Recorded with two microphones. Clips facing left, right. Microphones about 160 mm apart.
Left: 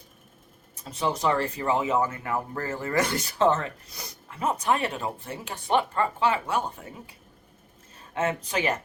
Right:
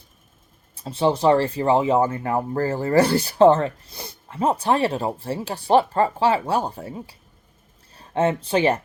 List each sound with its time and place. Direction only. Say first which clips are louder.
0.8 s speech: right 7 dB; 30° right (ahead or behind)